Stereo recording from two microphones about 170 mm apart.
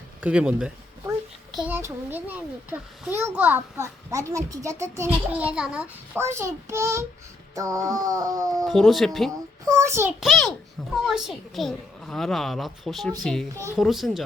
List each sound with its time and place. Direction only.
0.2 s a child's voice: 5° right (ahead or behind)
7.5 s a sound: 20° right (ahead or behind)
8.6 s a woman's voice: centre (ahead or behind)
9.6 s a child's voice: 15° right (ahead or behind)
10.2 s a woman's voice: centre (ahead or behind)